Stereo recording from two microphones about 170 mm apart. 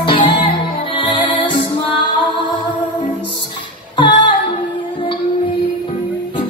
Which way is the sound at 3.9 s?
30° left (ahead or behind).